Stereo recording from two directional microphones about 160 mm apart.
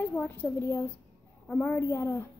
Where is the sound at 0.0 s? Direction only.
10° left (ahead or behind).